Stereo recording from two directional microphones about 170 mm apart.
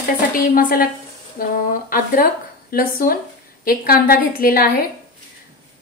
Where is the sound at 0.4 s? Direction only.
60° left (ahead or behind).